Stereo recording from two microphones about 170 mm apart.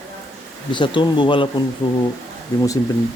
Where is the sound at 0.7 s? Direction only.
30° left (ahead or behind).